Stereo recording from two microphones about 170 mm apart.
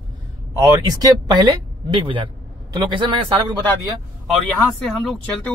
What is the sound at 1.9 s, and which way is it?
A man's voice, 30° right (ahead or behind).